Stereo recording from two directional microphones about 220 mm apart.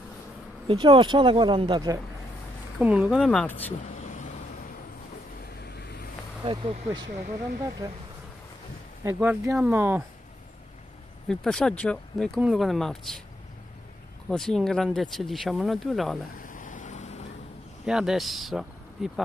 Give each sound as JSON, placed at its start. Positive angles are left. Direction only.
{"t": 0.7, "sound": "speech", "side_deg": -25}
{"t": 2.8, "sound": "speech", "side_deg": -5}
{"t": 3.9, "sound": "vehicle", "side_deg": 35}
{"t": 5.6, "sound": "vehicle", "side_deg": 50}
{"t": 6.4, "sound": "speech", "side_deg": -25}
{"t": 7.2, "sound": "speech", "side_deg": -40}
{"t": 9.0, "sound": "speech", "side_deg": -10}
{"t": 11.2, "sound": "speech", "side_deg": 5}
{"t": 14.3, "sound": "speech", "side_deg": 0}
{"t": 16.3, "sound": "vehicle", "side_deg": 35}
{"t": 17.8, "sound": "speech", "side_deg": 0}